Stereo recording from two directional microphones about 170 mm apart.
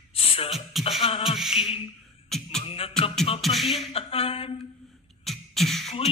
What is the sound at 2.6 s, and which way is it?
Music, 35° left (ahead or behind).